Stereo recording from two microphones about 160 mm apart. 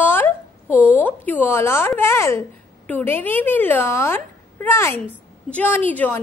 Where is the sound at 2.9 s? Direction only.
10° left (ahead or behind).